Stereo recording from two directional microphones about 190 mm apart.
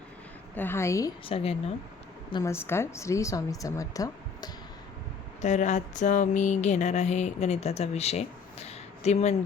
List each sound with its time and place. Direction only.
0.5 s a woman's voice: 10° left (ahead or behind)
1.2 s speech: 30° left (ahead or behind)
2.3 s a woman's voice: 15° left (ahead or behind)
5.4 s a sound: 40° left (ahead or behind)